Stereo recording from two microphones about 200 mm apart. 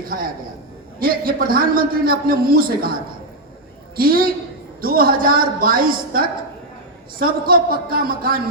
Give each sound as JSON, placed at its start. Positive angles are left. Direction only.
{"t": 0.9, "sound": "a man's voice", "side_deg": -45}
{"t": 3.9, "sound": "a man's voice", "side_deg": -50}